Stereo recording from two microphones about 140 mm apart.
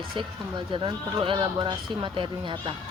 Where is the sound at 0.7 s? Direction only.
40° right (ahead or behind).